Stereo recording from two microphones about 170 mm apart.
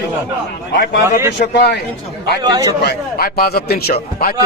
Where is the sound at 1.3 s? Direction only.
75° left (ahead or behind).